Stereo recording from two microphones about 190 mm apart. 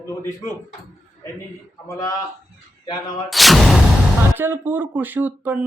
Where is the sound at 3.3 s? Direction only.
Centre (ahead or behind).